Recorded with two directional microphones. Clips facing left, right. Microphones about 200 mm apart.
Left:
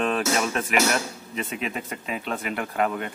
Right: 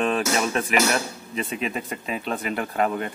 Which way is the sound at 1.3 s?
25° right (ahead or behind).